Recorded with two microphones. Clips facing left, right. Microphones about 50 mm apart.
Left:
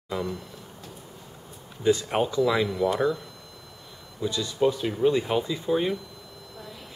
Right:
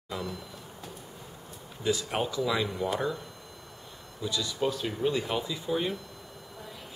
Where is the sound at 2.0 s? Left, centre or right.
Centre.